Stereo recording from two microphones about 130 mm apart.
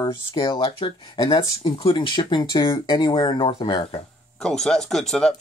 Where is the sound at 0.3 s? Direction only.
40° left (ahead or behind).